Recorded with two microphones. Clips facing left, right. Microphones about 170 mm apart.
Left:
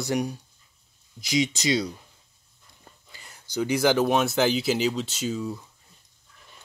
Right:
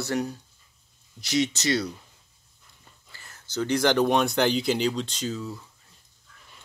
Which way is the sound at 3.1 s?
15° left (ahead or behind).